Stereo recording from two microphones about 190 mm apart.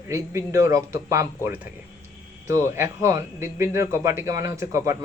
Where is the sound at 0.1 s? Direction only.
15° right (ahead or behind).